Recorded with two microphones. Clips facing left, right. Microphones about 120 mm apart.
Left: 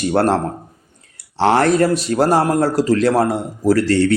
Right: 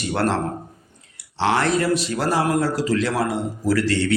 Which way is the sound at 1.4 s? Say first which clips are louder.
Left 6 dB; 45° left (ahead or behind).